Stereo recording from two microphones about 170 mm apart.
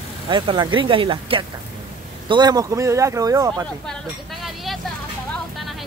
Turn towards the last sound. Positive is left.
turn(degrees=0)  # may be behind; listen again after turning